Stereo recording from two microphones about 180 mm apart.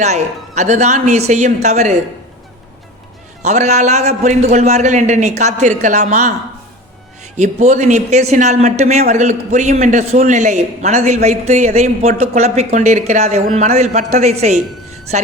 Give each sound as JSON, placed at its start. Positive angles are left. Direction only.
{"t": 0.0, "sound": "a man's voice", "side_deg": -40}
{"t": 3.4, "sound": "a man's voice", "side_deg": -40}
{"t": 7.3, "sound": "a man's voice", "side_deg": -40}